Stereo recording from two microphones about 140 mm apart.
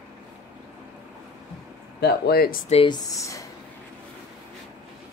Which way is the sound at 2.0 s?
90° left.